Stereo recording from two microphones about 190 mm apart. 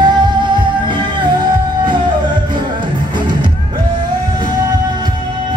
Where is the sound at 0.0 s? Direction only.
25° right (ahead or behind).